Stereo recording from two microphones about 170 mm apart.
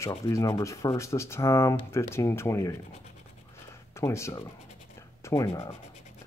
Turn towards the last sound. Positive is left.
turn(degrees=20)  # may be behind; listen again after turning